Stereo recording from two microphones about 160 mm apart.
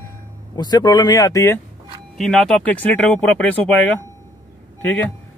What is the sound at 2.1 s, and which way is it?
A man's voice, centre (ahead or behind).